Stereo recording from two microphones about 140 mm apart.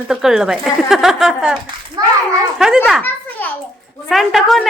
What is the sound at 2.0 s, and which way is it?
Speech, 30° right (ahead or behind).